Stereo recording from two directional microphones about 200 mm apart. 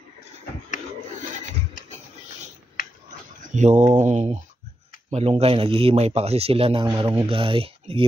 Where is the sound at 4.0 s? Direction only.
35° right (ahead or behind).